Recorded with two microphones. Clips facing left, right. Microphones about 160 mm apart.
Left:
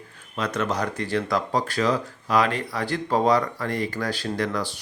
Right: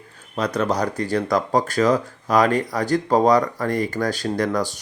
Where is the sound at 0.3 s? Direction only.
35° right (ahead or behind).